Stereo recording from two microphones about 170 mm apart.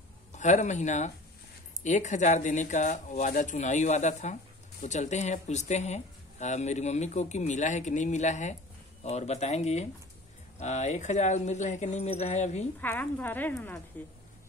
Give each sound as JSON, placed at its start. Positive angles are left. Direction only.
{"t": 0.3, "sound": "speech", "side_deg": 45}
{"t": 12.8, "sound": "speech", "side_deg": 10}